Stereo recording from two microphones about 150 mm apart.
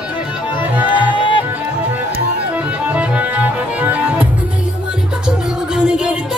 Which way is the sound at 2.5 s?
10° right (ahead or behind).